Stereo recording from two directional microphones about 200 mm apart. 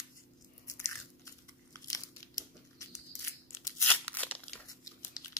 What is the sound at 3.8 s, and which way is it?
Crunch, 10° left (ahead or behind).